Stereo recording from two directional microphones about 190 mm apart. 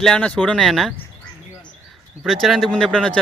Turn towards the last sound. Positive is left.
turn(degrees=5)  # may be behind; listen again after turning